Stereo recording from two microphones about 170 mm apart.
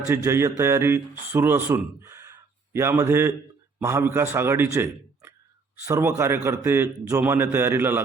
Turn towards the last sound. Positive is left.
turn(degrees=-15)  # may be behind; listen again after turning